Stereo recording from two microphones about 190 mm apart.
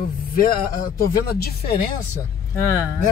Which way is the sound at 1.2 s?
55° left (ahead or behind).